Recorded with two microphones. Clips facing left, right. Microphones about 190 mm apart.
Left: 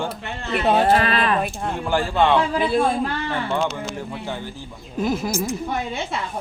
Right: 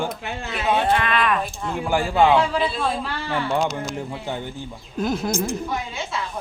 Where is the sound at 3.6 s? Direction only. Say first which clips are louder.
Right 1 dB; 40° right (ahead or behind).